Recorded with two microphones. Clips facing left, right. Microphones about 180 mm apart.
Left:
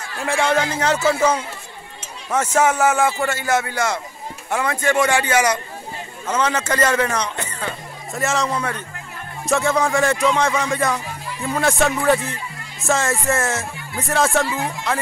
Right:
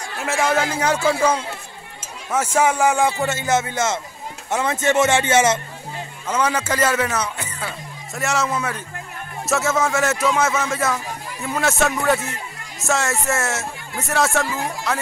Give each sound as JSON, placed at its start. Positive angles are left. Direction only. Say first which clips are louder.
{"t": 0.0, "sound": "a man's voice", "louder": "left 1 dB", "side_deg": -5}
{"t": 6.2, "sound": "speech", "louder": "even", "side_deg": -10}